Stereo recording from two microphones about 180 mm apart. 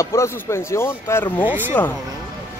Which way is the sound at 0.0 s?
15° left (ahead or behind).